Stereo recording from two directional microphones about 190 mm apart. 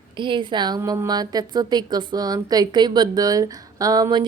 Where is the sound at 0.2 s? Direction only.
25° right (ahead or behind).